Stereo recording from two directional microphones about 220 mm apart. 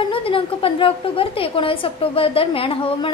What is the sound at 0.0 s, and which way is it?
A woman's voice, 25° left (ahead or behind).